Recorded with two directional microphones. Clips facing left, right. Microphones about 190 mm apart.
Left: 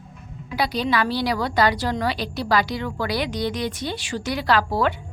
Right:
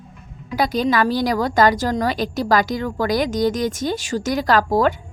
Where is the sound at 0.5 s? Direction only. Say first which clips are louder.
Right 4 dB; 45° right (ahead or behind).